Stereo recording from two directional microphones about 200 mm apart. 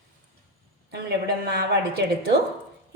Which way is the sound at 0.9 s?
55° right (ahead or behind).